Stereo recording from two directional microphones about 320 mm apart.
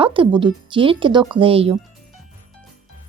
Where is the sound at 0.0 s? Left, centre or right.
Centre.